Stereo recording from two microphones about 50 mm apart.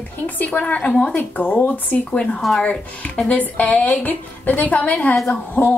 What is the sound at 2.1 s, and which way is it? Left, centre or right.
A woman's voice, left.